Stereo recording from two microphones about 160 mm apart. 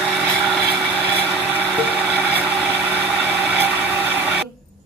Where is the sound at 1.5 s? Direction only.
10° right (ahead or behind).